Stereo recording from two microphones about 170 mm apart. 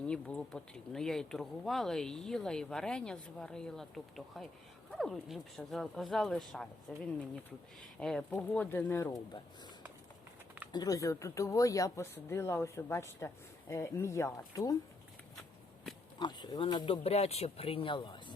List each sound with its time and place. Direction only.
0.0 s speech: 5° left (ahead or behind)
10.7 s speech: 25° left (ahead or behind)
16.1 s speech: 25° left (ahead or behind)